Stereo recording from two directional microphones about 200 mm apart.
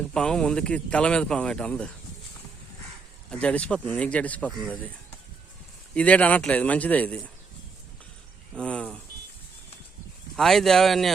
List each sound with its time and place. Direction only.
0.1 s speech: 5° left (ahead or behind)
3.2 s speech: 5° left (ahead or behind)
5.9 s speech: 5° left (ahead or behind)
8.5 s speech: 5° left (ahead or behind)
10.3 s speech: centre (ahead or behind)